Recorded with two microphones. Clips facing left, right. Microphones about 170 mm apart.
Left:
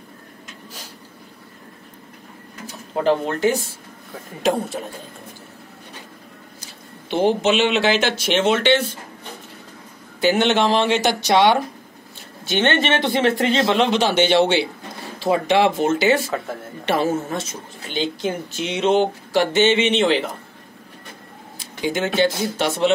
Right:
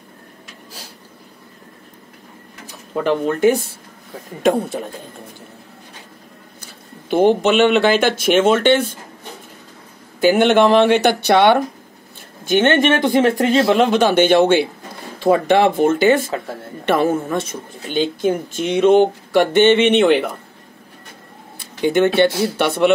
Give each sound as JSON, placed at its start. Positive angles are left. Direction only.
{"t": 3.0, "sound": "a woman's voice", "side_deg": -55}
{"t": 6.6, "sound": "speech", "side_deg": -55}
{"t": 10.2, "sound": "a woman's voice", "side_deg": -50}
{"t": 12.4, "sound": "a woman's voice", "side_deg": -45}
{"t": 21.5, "sound": "a woman's voice", "side_deg": -60}